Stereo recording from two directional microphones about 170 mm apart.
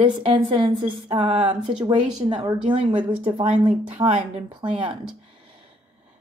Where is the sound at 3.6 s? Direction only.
40° right (ahead or behind).